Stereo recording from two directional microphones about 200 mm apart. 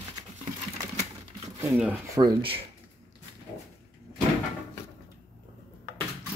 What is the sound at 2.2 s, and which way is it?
Speech, 25° right (ahead or behind).